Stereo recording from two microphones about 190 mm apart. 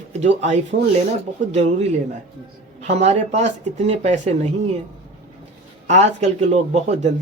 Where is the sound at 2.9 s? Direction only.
35° right (ahead or behind).